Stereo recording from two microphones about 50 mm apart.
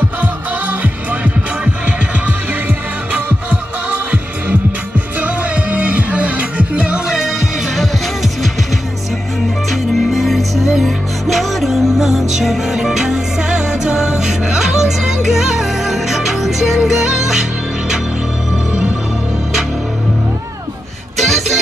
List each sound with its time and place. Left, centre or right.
3.1 s music: right
9.7 s music: centre
21.2 s music: centre